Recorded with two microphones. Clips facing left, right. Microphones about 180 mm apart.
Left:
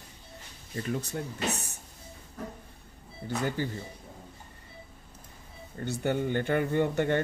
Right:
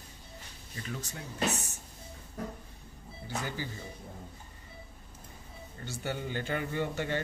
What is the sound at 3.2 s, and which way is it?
Speech, 55° left (ahead or behind).